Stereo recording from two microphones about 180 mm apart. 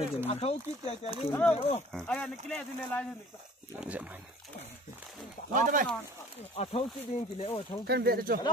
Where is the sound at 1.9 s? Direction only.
5° left (ahead or behind).